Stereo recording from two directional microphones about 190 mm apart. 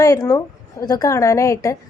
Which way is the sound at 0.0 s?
20° left (ahead or behind).